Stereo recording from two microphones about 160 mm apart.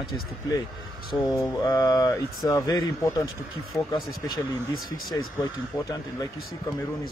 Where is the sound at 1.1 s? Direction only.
20° left (ahead or behind).